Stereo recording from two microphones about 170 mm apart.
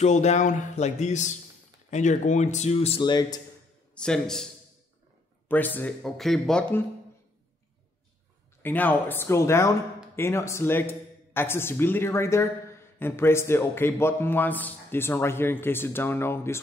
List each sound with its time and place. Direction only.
0.0 s speech: 40° left (ahead or behind)
3.0 s speech: 25° left (ahead or behind)
3.9 s a man's voice: 5° left (ahead or behind)
5.5 s a man's voice: 10° left (ahead or behind)
8.6 s a man's voice: 10° left (ahead or behind)